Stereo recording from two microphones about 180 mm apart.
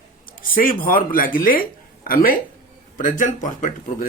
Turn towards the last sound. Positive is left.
turn(degrees=45)  # may be behind; listen again after turning